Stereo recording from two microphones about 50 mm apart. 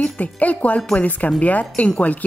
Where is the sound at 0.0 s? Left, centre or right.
Left.